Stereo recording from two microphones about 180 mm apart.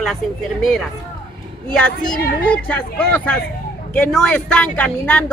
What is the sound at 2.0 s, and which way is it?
Speech, 55° left (ahead or behind).